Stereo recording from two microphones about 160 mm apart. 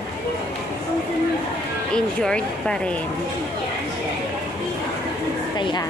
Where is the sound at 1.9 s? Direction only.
5° left (ahead or behind).